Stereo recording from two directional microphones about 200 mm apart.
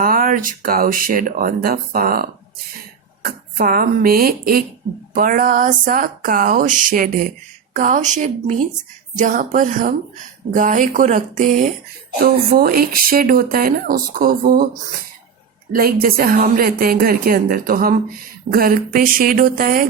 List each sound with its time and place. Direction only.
0.0 s a woman's voice: 45° right (ahead or behind)
15.7 s speech: 45° right (ahead or behind)